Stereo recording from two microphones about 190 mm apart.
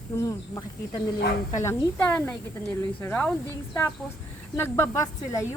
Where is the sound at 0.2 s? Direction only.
15° left (ahead or behind).